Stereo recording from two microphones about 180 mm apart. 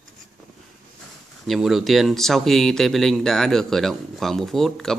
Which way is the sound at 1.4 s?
Centre (ahead or behind).